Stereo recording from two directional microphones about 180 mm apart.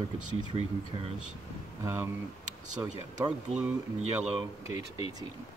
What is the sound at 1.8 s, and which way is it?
Speech, 15° right (ahead or behind).